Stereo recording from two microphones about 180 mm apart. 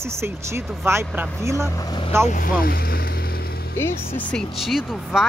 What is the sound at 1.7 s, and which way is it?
Speech, 20° left (ahead or behind).